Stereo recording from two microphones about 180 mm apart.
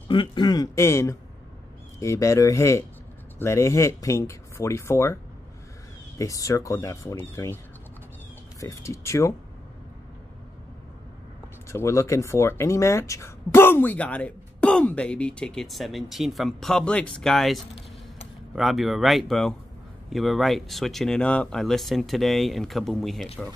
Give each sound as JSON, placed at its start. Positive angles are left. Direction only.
{"t": 0.1, "sound": "speech", "side_deg": 25}
{"t": 8.5, "sound": "speech", "side_deg": 15}
{"t": 11.7, "sound": "speech", "side_deg": 15}